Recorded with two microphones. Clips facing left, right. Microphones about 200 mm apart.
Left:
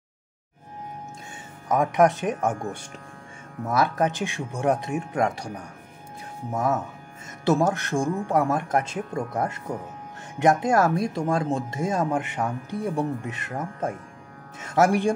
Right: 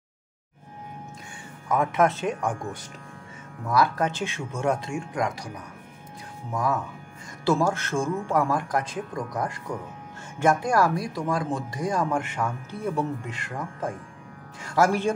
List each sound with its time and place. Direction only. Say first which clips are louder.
1.7 s speech: left 3 dB; 15° left (ahead or behind)
3.6 s speech: left 1 dB; 20° left (ahead or behind)